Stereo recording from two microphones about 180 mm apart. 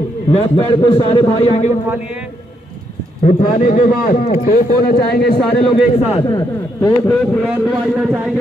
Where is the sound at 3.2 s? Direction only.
35° left (ahead or behind).